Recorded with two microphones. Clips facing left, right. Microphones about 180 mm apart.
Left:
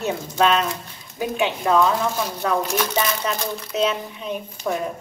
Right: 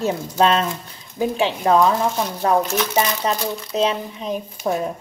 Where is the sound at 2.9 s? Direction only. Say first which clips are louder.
Right 3 dB; 30° right (ahead or behind).